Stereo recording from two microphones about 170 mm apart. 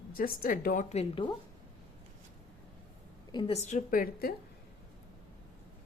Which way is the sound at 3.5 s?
40° left (ahead or behind).